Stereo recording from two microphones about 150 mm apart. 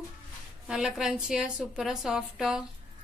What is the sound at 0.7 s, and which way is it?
A woman's voice, 5° right (ahead or behind).